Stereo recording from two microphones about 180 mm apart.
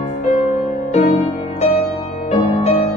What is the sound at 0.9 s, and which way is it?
Music, 40° left (ahead or behind).